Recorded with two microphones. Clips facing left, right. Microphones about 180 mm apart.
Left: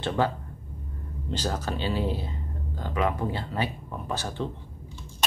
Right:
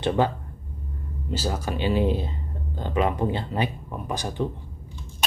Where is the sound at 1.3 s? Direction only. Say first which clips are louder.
Right 2 dB; 10° right (ahead or behind).